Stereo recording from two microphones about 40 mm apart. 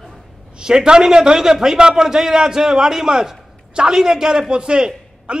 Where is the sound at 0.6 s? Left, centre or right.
Centre.